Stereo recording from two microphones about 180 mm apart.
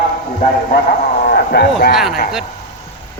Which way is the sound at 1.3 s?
65° left (ahead or behind).